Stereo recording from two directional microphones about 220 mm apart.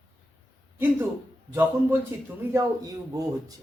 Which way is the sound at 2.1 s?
10° right (ahead or behind).